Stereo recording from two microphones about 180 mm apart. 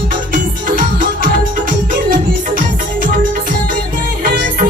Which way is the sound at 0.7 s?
50° right (ahead or behind).